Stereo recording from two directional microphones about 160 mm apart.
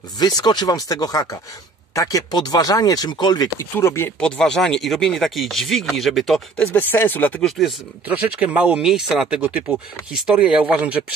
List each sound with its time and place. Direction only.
0.2 s speech: 25° left (ahead or behind)
4.2 s chopping: 5° left (ahead or behind)
7.5 s speech: 5° right (ahead or behind)